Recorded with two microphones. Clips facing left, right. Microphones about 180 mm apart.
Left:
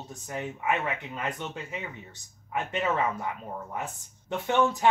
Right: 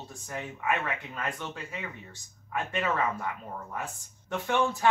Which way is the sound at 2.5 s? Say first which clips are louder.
Left 2 dB; 20° left (ahead or behind).